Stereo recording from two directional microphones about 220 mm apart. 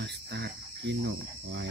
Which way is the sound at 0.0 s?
50° right (ahead or behind).